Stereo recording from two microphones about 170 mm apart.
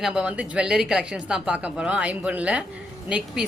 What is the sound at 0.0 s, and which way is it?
Speech, 5° right (ahead or behind).